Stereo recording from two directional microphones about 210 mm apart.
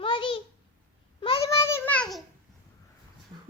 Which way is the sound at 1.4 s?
15° left (ahead or behind).